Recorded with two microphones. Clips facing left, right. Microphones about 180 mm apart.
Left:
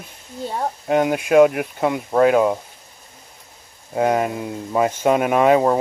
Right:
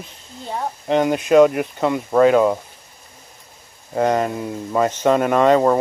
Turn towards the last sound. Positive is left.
turn(degrees=5)  # may be behind; listen again after turning